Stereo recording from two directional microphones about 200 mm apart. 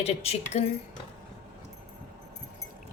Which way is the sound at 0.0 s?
30° left (ahead or behind).